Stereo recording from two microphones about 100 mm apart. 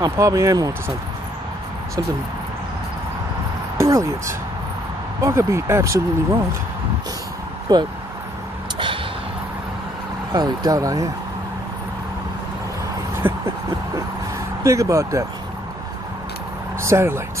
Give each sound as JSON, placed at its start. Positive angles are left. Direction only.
{"t": 0.0, "sound": "speech", "side_deg": -35}
{"t": 3.7, "sound": "speech", "side_deg": -35}
{"t": 7.7, "sound": "speech", "side_deg": -40}
{"t": 8.7, "sound": "vehicle", "side_deg": -60}
{"t": 10.3, "sound": "speech", "side_deg": -40}
{"t": 13.2, "sound": "a sound", "side_deg": -20}
{"t": 14.6, "sound": "speech", "side_deg": -30}
{"t": 16.8, "sound": "speech", "side_deg": -25}